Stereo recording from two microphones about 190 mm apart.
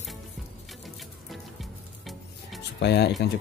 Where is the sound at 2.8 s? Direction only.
60° left (ahead or behind).